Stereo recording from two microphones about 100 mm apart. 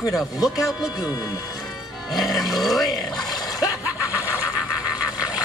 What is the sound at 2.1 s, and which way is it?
Speech, centre (ahead or behind).